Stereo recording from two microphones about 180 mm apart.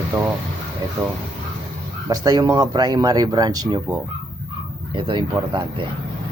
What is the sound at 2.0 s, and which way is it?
Speech, 20° right (ahead or behind).